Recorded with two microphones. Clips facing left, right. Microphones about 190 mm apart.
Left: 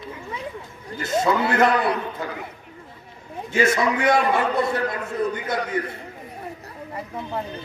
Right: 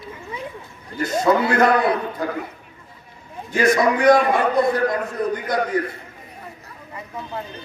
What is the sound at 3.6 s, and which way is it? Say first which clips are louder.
A man's voice: right 8 dB; 45° right (ahead or behind).